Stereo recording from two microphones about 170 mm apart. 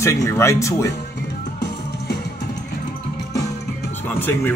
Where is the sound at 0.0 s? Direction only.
15° left (ahead or behind).